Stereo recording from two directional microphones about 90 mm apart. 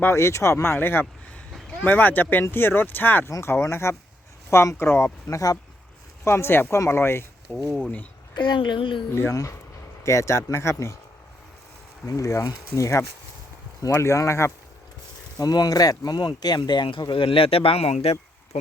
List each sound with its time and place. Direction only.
0.0 s speech: 30° left (ahead or behind)
5.3 s speech: 40° left (ahead or behind)
6.2 s speech: 30° left (ahead or behind)
8.4 s speech: 60° left (ahead or behind)
9.1 s speech: 35° left (ahead or behind)
12.0 s speech: 40° left (ahead or behind)
15.4 s speech: 45° left (ahead or behind); by 18.2 s 90° left